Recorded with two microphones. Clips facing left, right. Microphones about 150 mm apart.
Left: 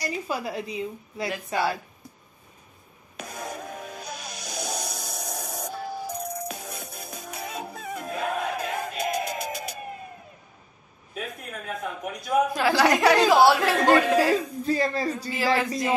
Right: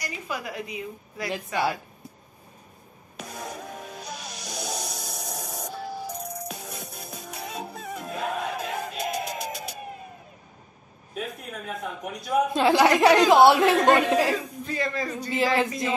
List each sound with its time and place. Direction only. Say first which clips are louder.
0.0 s a woman's voice: left 4 dB; 30° left (ahead or behind)
3.2 s music: left 1 dB; centre (ahead or behind)
11.1 s a man's voice: right 1 dB; centre (ahead or behind)
12.5 s a man's voice: right 6 dB; 25° right (ahead or behind)
14.6 s speech: left 4 dB; 35° left (ahead or behind)
15.3 s a man's voice: right 2 dB; 25° right (ahead or behind)